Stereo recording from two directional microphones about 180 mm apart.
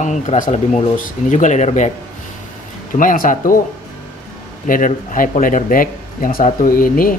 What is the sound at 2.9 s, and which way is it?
Speech, 50° left (ahead or behind).